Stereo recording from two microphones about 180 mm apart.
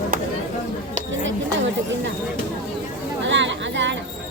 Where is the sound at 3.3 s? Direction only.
90° right.